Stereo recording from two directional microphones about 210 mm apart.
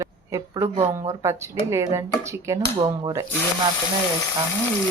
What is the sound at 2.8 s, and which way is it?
Dishes, 20° right (ahead or behind).